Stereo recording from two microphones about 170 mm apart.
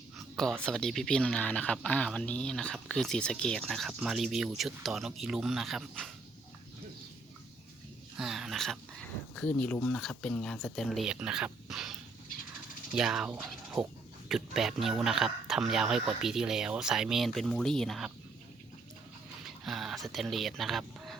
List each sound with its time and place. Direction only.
0.6 s speech: 5° left (ahead or behind)
8.1 s speech: centre (ahead or behind)
19.5 s speech: centre (ahead or behind)